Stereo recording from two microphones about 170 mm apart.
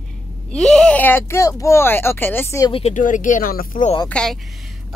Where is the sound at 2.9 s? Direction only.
50° left (ahead or behind).